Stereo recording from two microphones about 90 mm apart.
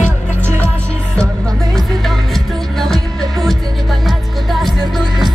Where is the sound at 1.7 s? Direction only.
Centre (ahead or behind).